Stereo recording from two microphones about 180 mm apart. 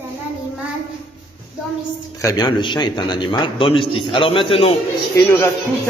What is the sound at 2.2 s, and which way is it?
A man's voice, 20° left (ahead or behind).